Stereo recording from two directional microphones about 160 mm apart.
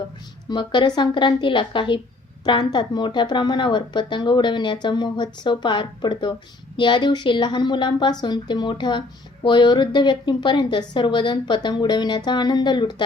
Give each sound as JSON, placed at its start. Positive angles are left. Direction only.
{"t": 0.4, "sound": "a woman's voice", "side_deg": 30}